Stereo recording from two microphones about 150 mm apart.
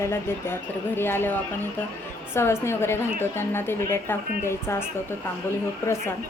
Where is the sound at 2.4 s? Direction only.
15° left (ahead or behind).